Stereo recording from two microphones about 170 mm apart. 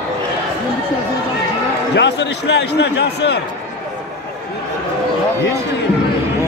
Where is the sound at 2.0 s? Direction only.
90° left.